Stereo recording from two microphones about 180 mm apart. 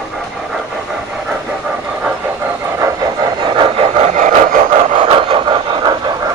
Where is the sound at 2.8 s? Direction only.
20° right (ahead or behind); by 4.6 s 45° right (ahead or behind).